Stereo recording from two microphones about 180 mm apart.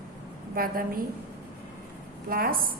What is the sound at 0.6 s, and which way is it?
Speech, 55° right (ahead or behind).